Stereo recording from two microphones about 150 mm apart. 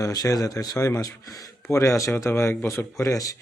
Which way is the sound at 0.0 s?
20° left (ahead or behind).